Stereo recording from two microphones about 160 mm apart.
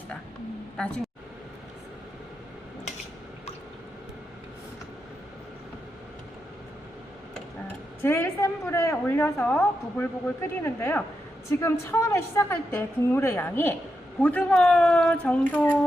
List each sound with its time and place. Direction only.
0.8 s a woman's voice: 5° left (ahead or behind)
8.0 s a woman's voice: 15° left (ahead or behind)